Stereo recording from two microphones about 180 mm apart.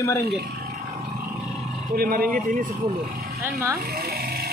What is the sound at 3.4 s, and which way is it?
Speech, 15° right (ahead or behind).